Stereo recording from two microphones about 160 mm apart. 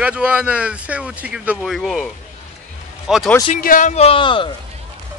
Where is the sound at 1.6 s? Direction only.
Centre (ahead or behind).